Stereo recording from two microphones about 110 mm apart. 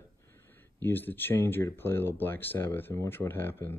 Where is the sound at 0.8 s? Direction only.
20° left (ahead or behind).